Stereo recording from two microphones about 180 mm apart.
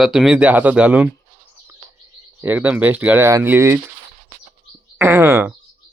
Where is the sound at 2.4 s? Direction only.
10° right (ahead or behind).